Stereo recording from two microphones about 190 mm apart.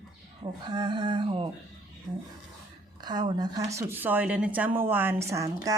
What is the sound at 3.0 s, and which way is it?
A woman's voice, 20° right (ahead or behind).